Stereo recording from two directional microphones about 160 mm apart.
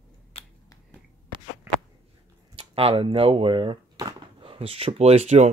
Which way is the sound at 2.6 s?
35° right (ahead or behind).